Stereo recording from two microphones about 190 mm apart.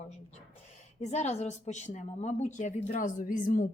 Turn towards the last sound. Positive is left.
turn(degrees=45)  # may be behind; listen again after turning